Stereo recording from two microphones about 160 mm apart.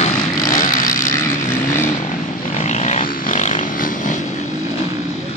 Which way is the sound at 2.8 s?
45° left (ahead or behind).